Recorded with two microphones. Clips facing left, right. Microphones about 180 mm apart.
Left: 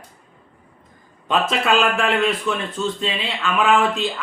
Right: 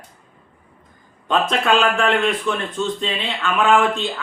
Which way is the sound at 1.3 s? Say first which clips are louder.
Right 1 dB; centre (ahead or behind).